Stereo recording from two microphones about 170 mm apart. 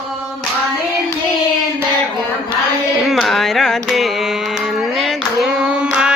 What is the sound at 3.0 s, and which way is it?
Carnatic music, centre (ahead or behind).